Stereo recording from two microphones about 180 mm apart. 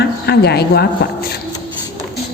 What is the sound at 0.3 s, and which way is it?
Speech, 65° left (ahead or behind).